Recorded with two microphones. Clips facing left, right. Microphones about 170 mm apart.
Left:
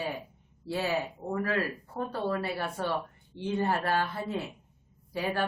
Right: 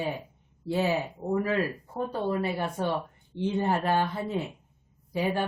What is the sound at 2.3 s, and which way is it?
A woman's voice, 15° right (ahead or behind).